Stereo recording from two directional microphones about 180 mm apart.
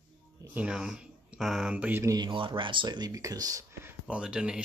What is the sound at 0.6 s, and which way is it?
Speech, 5° right (ahead or behind).